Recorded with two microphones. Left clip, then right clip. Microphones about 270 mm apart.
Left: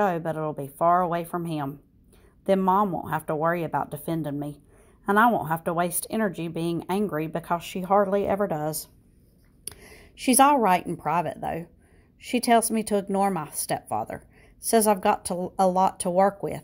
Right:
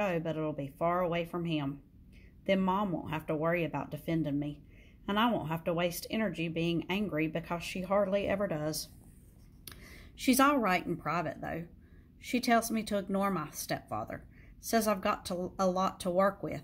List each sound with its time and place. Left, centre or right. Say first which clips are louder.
0.0 s speech: left 8 dB; left